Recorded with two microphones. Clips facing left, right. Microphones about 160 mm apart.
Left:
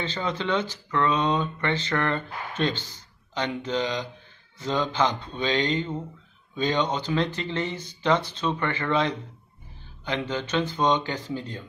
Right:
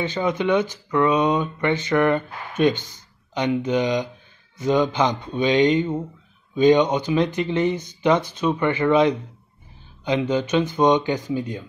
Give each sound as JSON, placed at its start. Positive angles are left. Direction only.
{"t": 0.0, "sound": "speech", "side_deg": -15}